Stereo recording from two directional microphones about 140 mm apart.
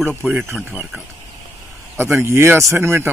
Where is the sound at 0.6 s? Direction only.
10° right (ahead or behind).